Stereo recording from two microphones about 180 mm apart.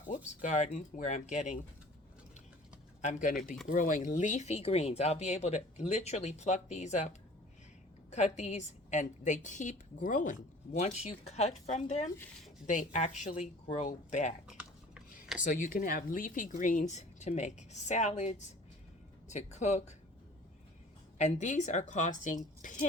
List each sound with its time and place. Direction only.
0.1 s speech: 40° left (ahead or behind)
3.0 s speech: 45° left (ahead or behind)
15.4 s speech: 45° left (ahead or behind)
21.2 s speech: 40° left (ahead or behind)